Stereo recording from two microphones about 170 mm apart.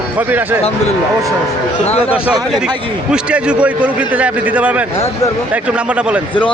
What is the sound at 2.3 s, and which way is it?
Speech, 25° right (ahead or behind).